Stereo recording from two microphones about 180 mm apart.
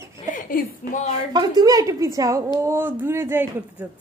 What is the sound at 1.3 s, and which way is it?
A woman's voice, 25° right (ahead or behind).